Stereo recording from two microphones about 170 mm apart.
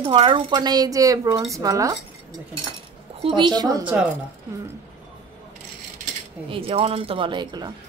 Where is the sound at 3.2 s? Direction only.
25° right (ahead or behind).